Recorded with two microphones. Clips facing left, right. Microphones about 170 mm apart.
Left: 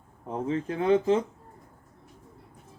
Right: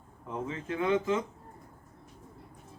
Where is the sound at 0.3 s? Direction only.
35° left (ahead or behind).